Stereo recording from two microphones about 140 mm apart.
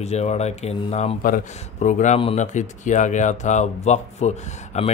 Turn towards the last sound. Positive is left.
turn(degrees=50)  # may be behind; listen again after turning